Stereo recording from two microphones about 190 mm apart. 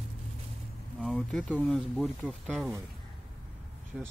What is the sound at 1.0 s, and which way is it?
Speech, centre (ahead or behind).